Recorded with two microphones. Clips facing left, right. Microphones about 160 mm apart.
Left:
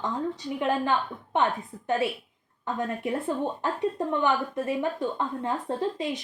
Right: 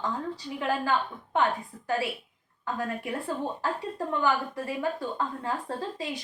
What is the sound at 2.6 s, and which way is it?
A woman's voice, 20° left (ahead or behind).